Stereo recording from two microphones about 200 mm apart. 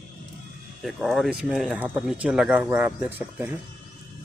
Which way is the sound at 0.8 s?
Centre (ahead or behind).